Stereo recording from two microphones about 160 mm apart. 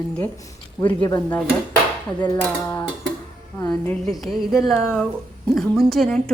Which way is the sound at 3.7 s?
5° left (ahead or behind).